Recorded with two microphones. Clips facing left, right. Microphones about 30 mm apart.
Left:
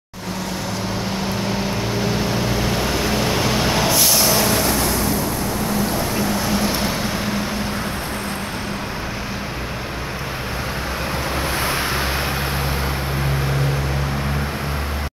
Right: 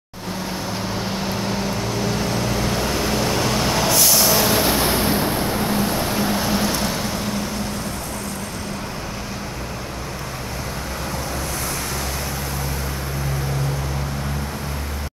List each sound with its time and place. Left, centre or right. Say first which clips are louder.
1.9 s vehicle: left 1 dB; centre
4.8 s vehicle: right 1 dB; right
6.4 s vehicle: left 1 dB; centre
6.8 s vehicle: left 1 dB; centre